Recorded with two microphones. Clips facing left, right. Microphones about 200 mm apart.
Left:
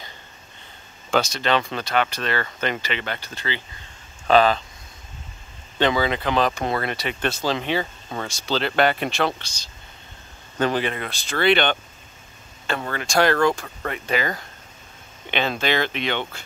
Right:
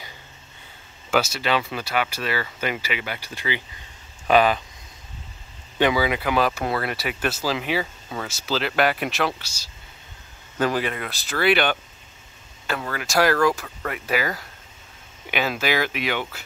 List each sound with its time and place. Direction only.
1.1 s speech: 5° right (ahead or behind)
5.8 s speech: 10° right (ahead or behind)
8.5 s speech: 30° left (ahead or behind)
8.9 s speech: 5° right (ahead or behind)
11.0 s speech: 5° right (ahead or behind)
12.7 s speech: 30° left (ahead or behind)
13.0 s speech: 5° right (ahead or behind)
13.3 s speech: 25° left (ahead or behind)
13.6 s speech: 5° right (ahead or behind)